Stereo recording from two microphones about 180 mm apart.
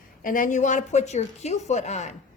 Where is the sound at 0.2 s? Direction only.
50° left (ahead or behind).